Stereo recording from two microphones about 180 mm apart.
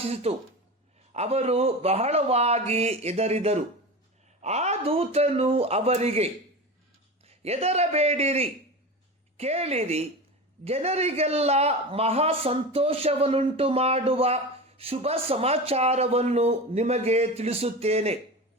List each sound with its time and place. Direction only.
0.0 s a man's voice: 35° right (ahead or behind)